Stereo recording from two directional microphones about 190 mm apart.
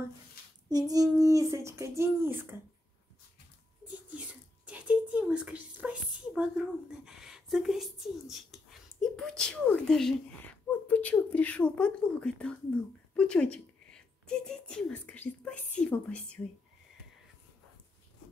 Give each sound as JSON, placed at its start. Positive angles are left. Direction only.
{"t": 0.7, "sound": "child singing", "side_deg": -20}
{"t": 1.2, "sound": "speech", "side_deg": -15}
{"t": 4.6, "sound": "a woman's voice", "side_deg": -5}